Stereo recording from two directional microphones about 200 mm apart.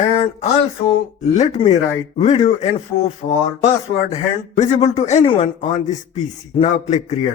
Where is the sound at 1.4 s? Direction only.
35° left (ahead or behind).